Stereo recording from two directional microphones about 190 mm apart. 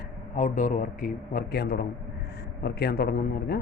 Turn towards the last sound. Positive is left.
turn(degrees=50)  # may be behind; listen again after turning